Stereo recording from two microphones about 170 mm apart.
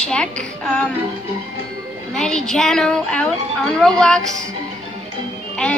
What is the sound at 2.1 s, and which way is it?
Speech, 5° left (ahead or behind).